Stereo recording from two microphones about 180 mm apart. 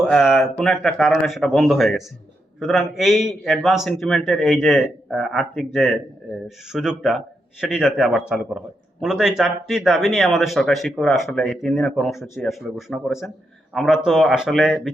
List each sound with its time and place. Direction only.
0.0 s speech: centre (ahead or behind)